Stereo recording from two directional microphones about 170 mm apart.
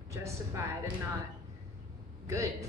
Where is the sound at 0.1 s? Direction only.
15° right (ahead or behind).